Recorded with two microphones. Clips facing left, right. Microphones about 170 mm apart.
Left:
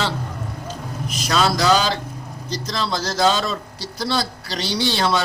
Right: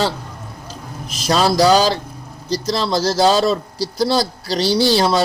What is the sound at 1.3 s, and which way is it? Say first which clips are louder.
Speech: right 5 dB; 35° right (ahead or behind).